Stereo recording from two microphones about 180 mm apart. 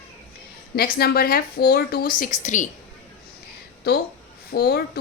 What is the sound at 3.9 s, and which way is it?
Speech, 60° left (ahead or behind).